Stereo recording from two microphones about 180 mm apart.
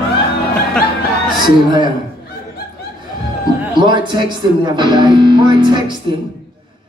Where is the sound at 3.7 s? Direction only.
25° right (ahead or behind).